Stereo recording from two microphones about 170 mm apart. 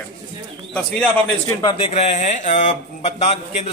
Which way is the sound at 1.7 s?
35° left (ahead or behind).